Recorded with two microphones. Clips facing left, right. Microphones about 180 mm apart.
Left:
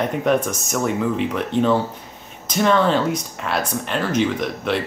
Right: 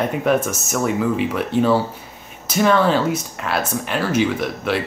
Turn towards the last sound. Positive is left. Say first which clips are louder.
# right 1 dB
turn(degrees=-5)  # may be behind; listen again after turning